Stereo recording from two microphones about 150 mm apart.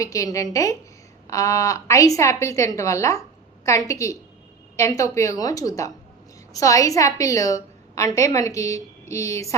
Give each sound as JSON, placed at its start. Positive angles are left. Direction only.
{"t": 0.0, "sound": "a woman's voice", "side_deg": 20}